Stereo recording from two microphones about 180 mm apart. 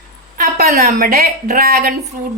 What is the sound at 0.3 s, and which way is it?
A woman's voice, 45° right (ahead or behind).